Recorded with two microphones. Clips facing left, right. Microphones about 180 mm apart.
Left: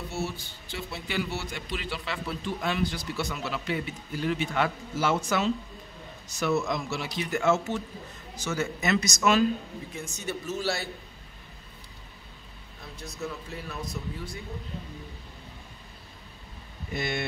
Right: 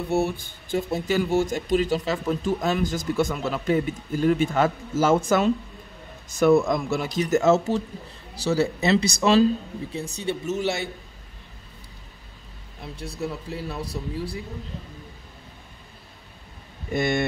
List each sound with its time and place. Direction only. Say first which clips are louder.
0.1 s a man's voice: right 12 dB; 55° right (ahead or behind); by 10.9 s 20° right (ahead or behind)
12.9 s speech: right 5 dB; 30° right (ahead or behind)
16.9 s speech: right 8 dB; 50° right (ahead or behind)